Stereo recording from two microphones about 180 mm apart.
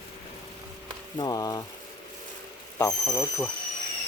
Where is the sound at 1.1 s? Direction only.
20° left (ahead or behind).